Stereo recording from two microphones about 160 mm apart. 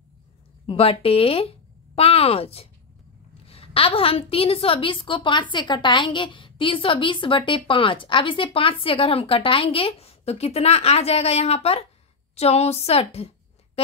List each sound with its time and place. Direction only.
0.7 s a woman's voice: 35° left (ahead or behind)